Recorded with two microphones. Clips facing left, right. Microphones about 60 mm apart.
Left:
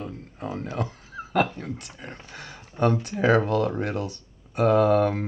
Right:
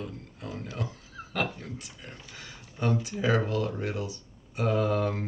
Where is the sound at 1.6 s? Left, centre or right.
Left.